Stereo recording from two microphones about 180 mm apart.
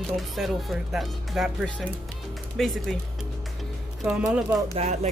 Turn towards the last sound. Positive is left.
turn(degrees=-40)  # may be behind; listen again after turning